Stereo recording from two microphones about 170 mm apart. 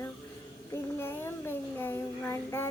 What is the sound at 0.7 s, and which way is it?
Speech, 15° left (ahead or behind).